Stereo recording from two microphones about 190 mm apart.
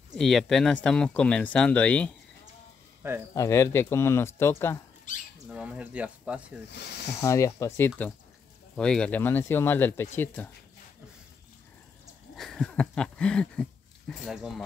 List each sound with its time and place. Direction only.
0.1 s speech: centre (ahead or behind)
3.0 s speech: 10° right (ahead or behind)
3.3 s speech: 15° left (ahead or behind)
5.1 s squawk: 45° left (ahead or behind)
5.5 s speech: 5° right (ahead or behind)
6.7 s speech: 60° left (ahead or behind)
7.2 s speech: 15° left (ahead or behind)
12.4 s a sound: centre (ahead or behind)